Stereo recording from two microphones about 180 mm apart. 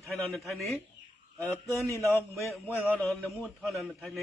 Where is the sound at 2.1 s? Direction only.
10° left (ahead or behind).